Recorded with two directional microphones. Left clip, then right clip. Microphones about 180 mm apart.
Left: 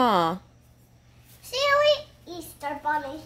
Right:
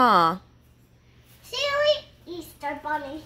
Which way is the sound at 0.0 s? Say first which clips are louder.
Right 3 dB; 10° left (ahead or behind).